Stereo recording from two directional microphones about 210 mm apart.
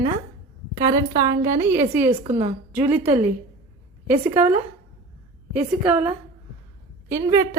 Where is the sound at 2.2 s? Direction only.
30° right (ahead or behind).